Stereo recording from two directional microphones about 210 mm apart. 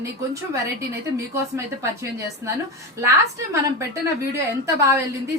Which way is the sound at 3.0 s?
15° right (ahead or behind).